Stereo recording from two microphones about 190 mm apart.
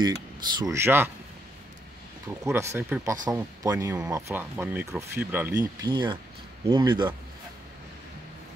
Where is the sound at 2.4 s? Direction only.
15° right (ahead or behind).